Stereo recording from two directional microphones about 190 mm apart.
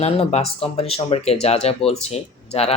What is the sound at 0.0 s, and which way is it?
Speech, 35° left (ahead or behind).